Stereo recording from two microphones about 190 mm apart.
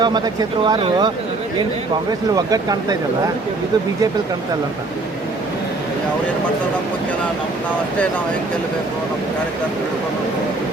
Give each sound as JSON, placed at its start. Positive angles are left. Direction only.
{"t": 0.0, "sound": "speech", "side_deg": -25}
{"t": 2.3, "sound": "speech", "side_deg": -20}